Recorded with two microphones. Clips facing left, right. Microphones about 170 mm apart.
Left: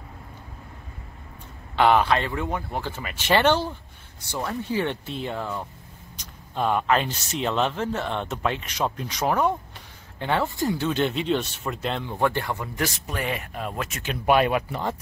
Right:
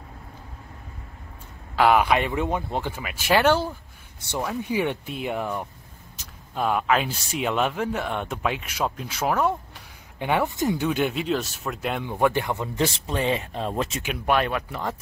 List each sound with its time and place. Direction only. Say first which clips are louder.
1.8 s speech: even; 5° right (ahead or behind)
3.0 s speech: even; 5° right (ahead or behind)
6.1 s speech: left 1 dB; 5° right (ahead or behind)
10.1 s speech: right 1 dB; 15° right (ahead or behind); by 14.0 s 30° right (ahead or behind)
14.2 s speech: left 4 dB; 5° left (ahead or behind)